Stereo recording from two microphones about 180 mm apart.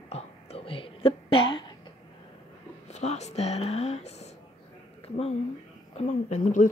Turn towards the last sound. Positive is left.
turn(degrees=45)  # may be behind; listen again after turning